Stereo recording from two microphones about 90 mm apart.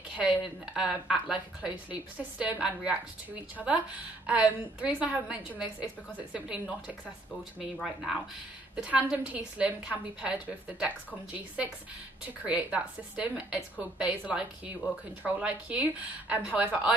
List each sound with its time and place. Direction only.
0.1 s speech: 10° right (ahead or behind)
7.7 s speech: centre (ahead or behind)
8.7 s speech: 15° right (ahead or behind)
11.3 s speech: 15° right (ahead or behind)